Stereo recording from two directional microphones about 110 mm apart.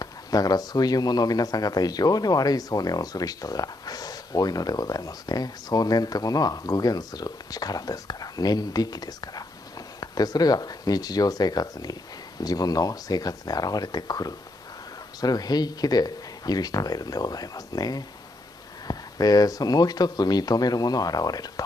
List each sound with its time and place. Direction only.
0.0 s speech: 35° left (ahead or behind)